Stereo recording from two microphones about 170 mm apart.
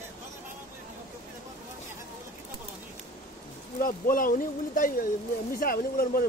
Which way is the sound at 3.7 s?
55° left (ahead or behind).